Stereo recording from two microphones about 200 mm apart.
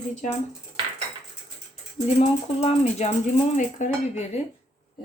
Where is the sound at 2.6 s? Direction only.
30° left (ahead or behind).